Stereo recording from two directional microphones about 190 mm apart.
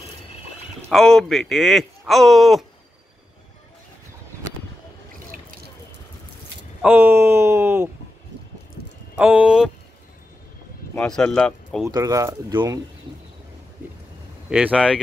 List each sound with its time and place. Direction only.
0.8 s speech: 5° left (ahead or behind)
5.3 s a sound: 45° right (ahead or behind)
6.8 s speech: 10° right (ahead or behind)
9.2 s speech: 5° right (ahead or behind)
11.0 s speech: 5° left (ahead or behind)
11.9 s speech: 15° right (ahead or behind)
14.5 s speech: 5° right (ahead or behind)